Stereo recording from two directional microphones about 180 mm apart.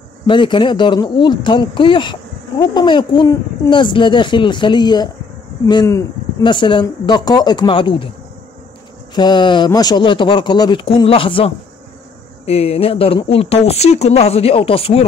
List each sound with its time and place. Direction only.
0.3 s speech: 25° left (ahead or behind)
9.1 s speech: 25° left (ahead or behind)